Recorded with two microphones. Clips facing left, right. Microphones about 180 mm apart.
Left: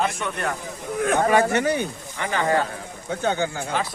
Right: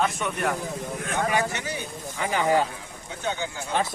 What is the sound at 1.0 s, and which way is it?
Speech, 50° left (ahead or behind).